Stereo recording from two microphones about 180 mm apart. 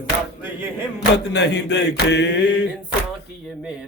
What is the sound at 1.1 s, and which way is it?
Mantra, 70° left (ahead or behind).